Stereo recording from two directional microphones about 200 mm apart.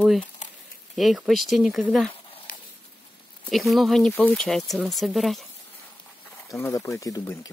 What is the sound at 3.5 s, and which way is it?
Speech, centre (ahead or behind).